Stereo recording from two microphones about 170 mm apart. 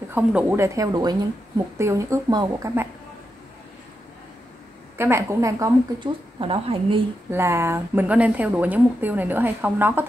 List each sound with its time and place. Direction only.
0.1 s speech: 10° right (ahead or behind)
4.9 s speech: 15° right (ahead or behind)
6.4 s a woman's voice: 30° right (ahead or behind)
7.2 s speech: 15° right (ahead or behind)